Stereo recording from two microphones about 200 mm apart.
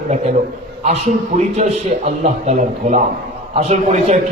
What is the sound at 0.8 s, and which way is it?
A man's voice, 35° right (ahead or behind).